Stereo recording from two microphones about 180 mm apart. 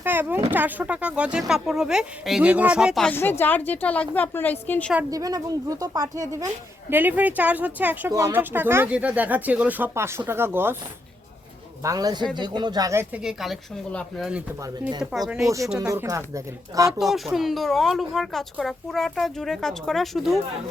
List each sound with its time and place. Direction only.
0.0 s a woman's voice: 10° right (ahead or behind); by 4.9 s 10° left (ahead or behind)
5.1 s speech: 20° right (ahead or behind)
11.8 s speech: 20° right (ahead or behind)
13.2 s speech: centre (ahead or behind)
14.6 s speech: 25° right (ahead or behind)
17.0 s speech: centre (ahead or behind)